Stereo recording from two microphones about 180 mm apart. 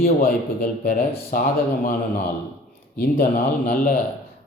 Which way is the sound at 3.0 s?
55° left (ahead or behind).